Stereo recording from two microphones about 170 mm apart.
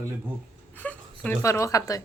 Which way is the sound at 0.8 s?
10° left (ahead or behind).